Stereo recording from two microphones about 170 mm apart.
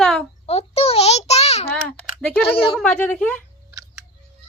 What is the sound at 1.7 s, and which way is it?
Speech, 5° left (ahead or behind).